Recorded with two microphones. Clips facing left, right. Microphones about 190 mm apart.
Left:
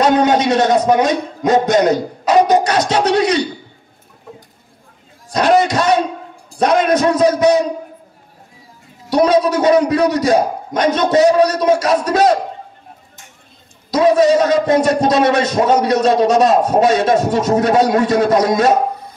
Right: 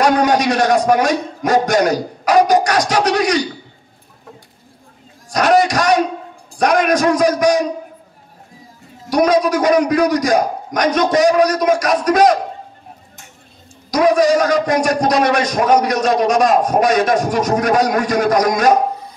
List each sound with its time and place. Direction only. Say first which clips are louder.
0.0 s a man's voice: left 1 dB; 25° left (ahead or behind)
5.3 s a man's voice: even; 25° left (ahead or behind)
9.1 s a man's voice: left 1 dB; 25° left (ahead or behind)
13.8 s a man's voice: left 1 dB; 25° left (ahead or behind)